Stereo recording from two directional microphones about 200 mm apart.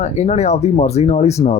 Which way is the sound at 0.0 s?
35° left (ahead or behind).